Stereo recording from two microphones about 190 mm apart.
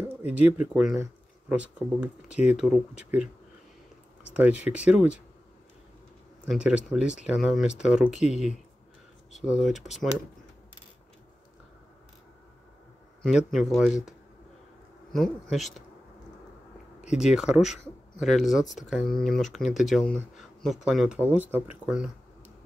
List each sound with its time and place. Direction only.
0.3 s speech: 5° right (ahead or behind)
4.4 s speech: 5° right (ahead or behind)
6.4 s speech: 5° right (ahead or behind)
9.6 s speech: centre (ahead or behind)
13.2 s speech: centre (ahead or behind)
15.5 s speech: centre (ahead or behind)
17.1 s speech: 5° right (ahead or behind)